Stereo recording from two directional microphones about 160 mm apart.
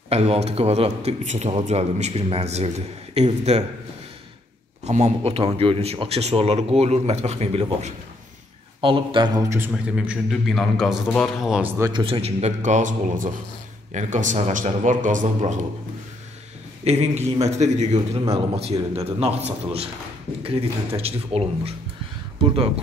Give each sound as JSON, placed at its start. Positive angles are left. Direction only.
{"t": 0.1, "sound": "a man's voice", "side_deg": -40}
{"t": 4.8, "sound": "a man's voice", "side_deg": -40}
{"t": 8.8, "sound": "a man's voice", "side_deg": -30}
{"t": 9.7, "sound": "a man's voice", "side_deg": -5}
{"t": 11.8, "sound": "a man's voice", "side_deg": -30}
{"t": 16.8, "sound": "a man's voice", "side_deg": -45}